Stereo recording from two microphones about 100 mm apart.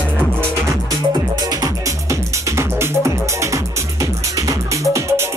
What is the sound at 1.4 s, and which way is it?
Music, 35° right (ahead or behind).